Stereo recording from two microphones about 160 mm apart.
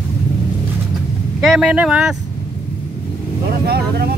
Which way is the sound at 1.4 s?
5° right (ahead or behind).